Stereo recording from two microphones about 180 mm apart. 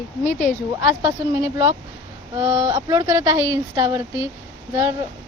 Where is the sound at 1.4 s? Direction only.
20° right (ahead or behind).